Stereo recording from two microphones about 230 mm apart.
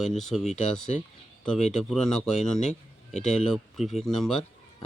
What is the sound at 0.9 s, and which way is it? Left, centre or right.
Speech, left.